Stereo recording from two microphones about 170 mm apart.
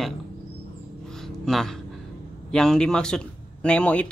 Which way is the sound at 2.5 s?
5° left (ahead or behind).